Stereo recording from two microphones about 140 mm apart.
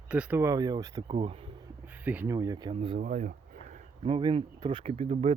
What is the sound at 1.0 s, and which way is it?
Speech, 40° right (ahead or behind).